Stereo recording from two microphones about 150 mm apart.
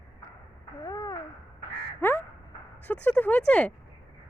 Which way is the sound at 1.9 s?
15° left (ahead or behind).